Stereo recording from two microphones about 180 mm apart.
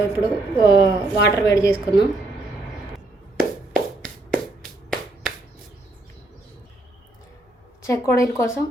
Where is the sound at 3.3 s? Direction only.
Centre (ahead or behind).